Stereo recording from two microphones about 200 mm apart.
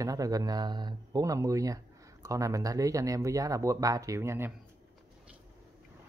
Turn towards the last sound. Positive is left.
turn(degrees=-15)  # may be behind; listen again after turning